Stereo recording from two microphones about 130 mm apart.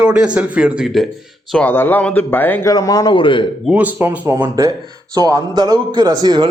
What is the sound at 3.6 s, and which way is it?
A man's voice, 10° right (ahead or behind).